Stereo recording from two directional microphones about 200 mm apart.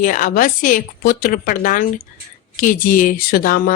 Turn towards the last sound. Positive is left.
turn(degrees=45)  # may be behind; listen again after turning